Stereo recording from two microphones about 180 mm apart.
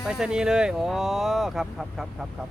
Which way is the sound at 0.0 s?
5° right (ahead or behind).